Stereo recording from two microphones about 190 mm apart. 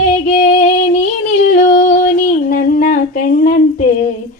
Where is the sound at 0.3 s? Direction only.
45° left (ahead or behind).